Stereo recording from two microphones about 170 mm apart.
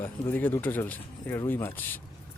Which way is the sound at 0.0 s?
10° left (ahead or behind).